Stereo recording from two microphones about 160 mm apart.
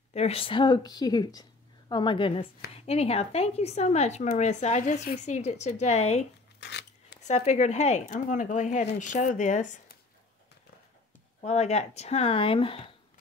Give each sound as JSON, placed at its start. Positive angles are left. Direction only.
{"t": 0.1, "sound": "a woman's voice", "side_deg": 40}
{"t": 6.6, "sound": "a sound", "side_deg": 90}
{"t": 7.2, "sound": "speech", "side_deg": 45}
{"t": 11.4, "sound": "speech", "side_deg": 45}